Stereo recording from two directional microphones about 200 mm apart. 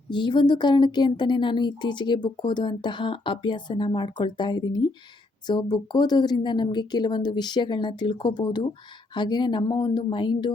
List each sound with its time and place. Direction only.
0.1 s speech: 25° left (ahead or behind)